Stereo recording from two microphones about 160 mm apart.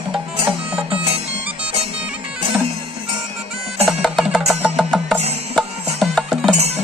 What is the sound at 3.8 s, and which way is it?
Music, centre (ahead or behind).